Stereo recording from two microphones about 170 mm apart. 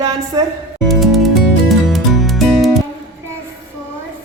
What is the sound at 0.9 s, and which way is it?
Music, centre (ahead or behind).